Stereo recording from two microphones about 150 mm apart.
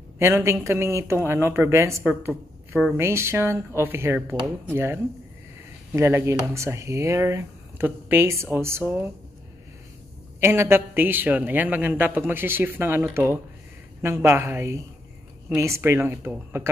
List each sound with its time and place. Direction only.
0.2 s speech: 20° right (ahead or behind)
10.4 s speech: 15° right (ahead or behind)